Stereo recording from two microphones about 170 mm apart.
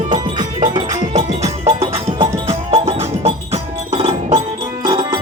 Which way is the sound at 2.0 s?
30° right (ahead or behind).